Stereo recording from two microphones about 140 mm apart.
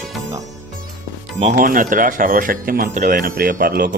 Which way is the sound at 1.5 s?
75° right (ahead or behind).